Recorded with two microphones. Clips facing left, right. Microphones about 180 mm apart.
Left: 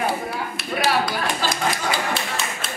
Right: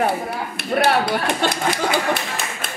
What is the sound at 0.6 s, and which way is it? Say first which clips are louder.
Clapping: right 4 dB; 60° right (ahead or behind).